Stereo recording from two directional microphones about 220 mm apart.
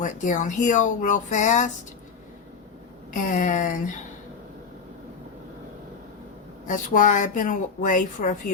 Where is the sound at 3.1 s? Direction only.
35° left (ahead or behind).